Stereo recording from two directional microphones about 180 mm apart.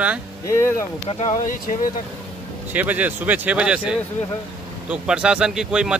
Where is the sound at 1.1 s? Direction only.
40° left (ahead or behind).